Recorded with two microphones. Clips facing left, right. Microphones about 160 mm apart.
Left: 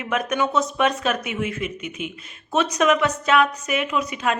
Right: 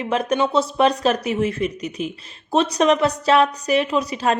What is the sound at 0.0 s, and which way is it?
Speech, 30° right (ahead or behind).